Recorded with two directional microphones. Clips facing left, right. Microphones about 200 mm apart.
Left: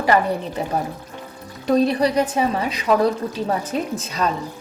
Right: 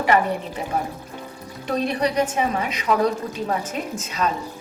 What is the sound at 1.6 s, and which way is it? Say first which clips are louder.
Speech: left 5 dB; 35° left (ahead or behind).